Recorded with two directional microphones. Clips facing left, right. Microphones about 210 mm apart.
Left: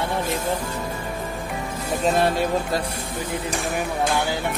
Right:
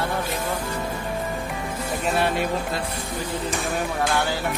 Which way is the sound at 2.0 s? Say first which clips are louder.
Left 4 dB; 35° left (ahead or behind).